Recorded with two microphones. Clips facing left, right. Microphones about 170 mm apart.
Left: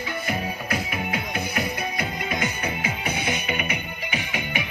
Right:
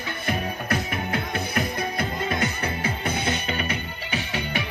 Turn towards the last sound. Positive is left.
turn(degrees=15)  # may be behind; listen again after turning